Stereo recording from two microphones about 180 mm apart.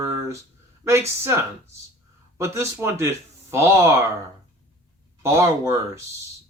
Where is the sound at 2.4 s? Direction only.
15° right (ahead or behind).